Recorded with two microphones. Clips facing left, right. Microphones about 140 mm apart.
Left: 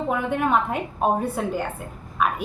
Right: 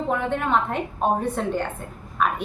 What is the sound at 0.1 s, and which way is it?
A woman's voice, 10° left (ahead or behind).